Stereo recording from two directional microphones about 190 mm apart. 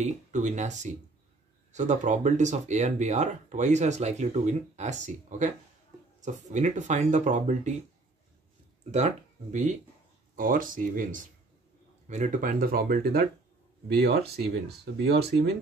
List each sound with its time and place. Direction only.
0.0 s speech: 40° right (ahead or behind)
6.5 s speech: 40° right (ahead or behind)
8.9 s speech: 40° right (ahead or behind); by 15.5 s 60° right (ahead or behind)